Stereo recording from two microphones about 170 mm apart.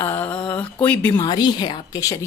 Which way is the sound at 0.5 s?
10° left (ahead or behind).